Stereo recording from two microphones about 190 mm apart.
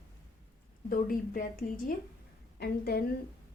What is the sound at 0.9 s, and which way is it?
A woman's voice, 45° left (ahead or behind).